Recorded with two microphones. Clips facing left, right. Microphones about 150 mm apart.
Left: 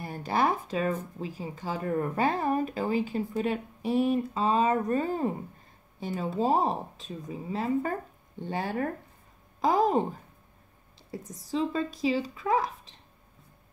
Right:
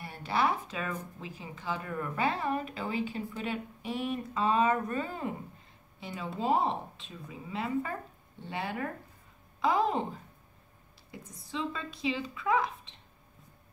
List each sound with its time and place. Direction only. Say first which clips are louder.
0.0 s speech: left 3 dB; 40° left (ahead or behind)
11.1 s speech: left 9 dB; 35° left (ahead or behind)